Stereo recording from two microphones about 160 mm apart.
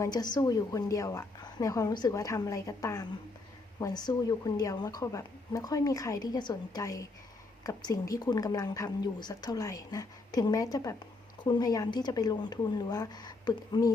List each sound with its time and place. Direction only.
0.0 s a woman's voice: 25° left (ahead or behind)